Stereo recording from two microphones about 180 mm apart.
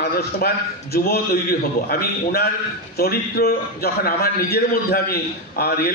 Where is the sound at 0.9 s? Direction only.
60° left (ahead or behind).